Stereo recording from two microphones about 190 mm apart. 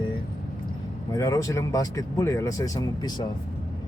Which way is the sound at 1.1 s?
15° left (ahead or behind).